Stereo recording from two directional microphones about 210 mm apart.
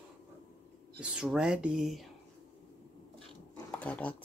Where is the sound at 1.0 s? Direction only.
5° right (ahead or behind).